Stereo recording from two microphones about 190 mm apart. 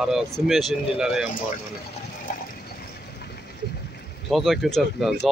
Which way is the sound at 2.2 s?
50° left (ahead or behind).